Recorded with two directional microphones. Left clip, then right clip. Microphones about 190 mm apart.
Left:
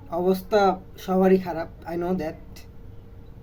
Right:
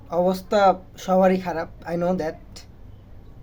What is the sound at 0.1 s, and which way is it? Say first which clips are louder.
Speech: right 1 dB; 55° right (ahead or behind).